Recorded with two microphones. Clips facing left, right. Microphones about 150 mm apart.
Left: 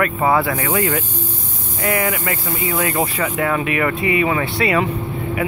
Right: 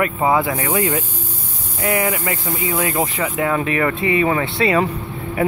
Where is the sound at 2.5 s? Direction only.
30° right (ahead or behind).